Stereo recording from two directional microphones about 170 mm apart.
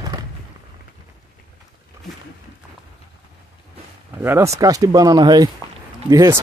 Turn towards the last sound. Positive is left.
turn(degrees=-20)  # may be behind; listen again after turning